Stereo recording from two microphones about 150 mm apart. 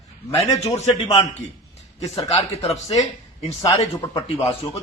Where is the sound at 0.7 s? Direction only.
50° left (ahead or behind).